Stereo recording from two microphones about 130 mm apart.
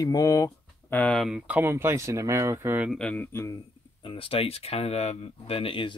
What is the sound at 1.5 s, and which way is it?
Speech, 15° right (ahead or behind).